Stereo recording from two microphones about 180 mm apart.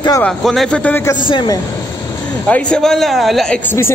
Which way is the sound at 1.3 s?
25° left (ahead or behind).